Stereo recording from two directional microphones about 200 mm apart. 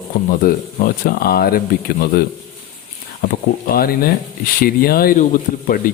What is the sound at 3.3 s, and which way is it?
Speech, 45° left (ahead or behind).